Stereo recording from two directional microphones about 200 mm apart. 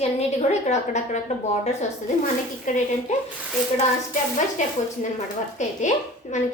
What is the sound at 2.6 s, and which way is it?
Speech, 40° left (ahead or behind).